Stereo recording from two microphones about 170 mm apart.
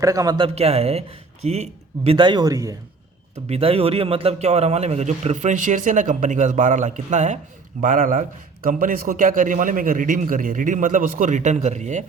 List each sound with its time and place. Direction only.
0.0 s speech: 20° right (ahead or behind); by 2.1 s 40° right (ahead or behind)
2.1 s a man's voice: 25° right (ahead or behind)
3.5 s a man's voice: 35° right (ahead or behind)